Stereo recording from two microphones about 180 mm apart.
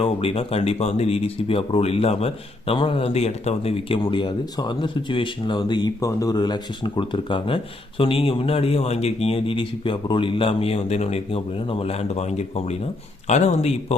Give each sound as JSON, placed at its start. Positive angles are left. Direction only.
{"t": 0.0, "sound": "speech", "side_deg": 30}